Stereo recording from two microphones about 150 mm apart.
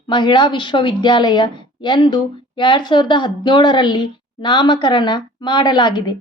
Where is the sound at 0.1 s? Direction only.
30° left (ahead or behind).